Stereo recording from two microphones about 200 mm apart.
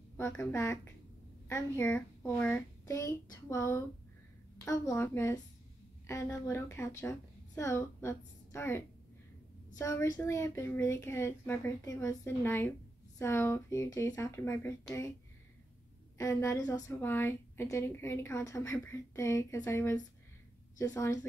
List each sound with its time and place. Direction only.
0.2 s a woman's voice: 15° left (ahead or behind)
16.2 s a woman's voice: 15° left (ahead or behind)